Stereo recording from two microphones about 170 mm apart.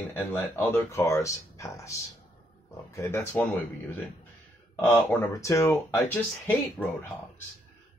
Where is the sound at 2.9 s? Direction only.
15° left (ahead or behind).